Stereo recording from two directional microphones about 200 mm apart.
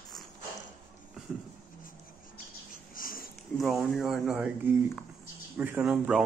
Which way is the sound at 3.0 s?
45° left (ahead or behind).